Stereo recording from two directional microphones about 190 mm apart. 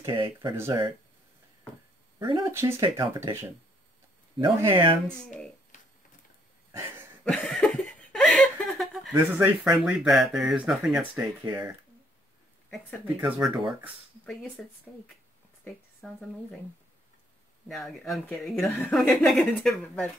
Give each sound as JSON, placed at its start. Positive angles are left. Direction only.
{"t": 0.0, "sound": "speech", "side_deg": -25}
{"t": 2.1, "sound": "speech", "side_deg": -20}
{"t": 5.0, "sound": "a woman's voice", "side_deg": 5}
{"t": 6.7, "sound": "a sound", "side_deg": -15}
{"t": 7.2, "sound": "a sound", "side_deg": 5}
{"t": 9.3, "sound": "a woman's voice", "side_deg": 0}
{"t": 11.1, "sound": "speech", "side_deg": -15}
{"t": 12.6, "sound": "a woman's voice", "side_deg": 5}
{"t": 17.6, "sound": "a woman's voice", "side_deg": 0}